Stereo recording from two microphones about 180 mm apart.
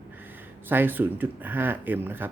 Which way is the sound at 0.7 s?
10° right (ahead or behind).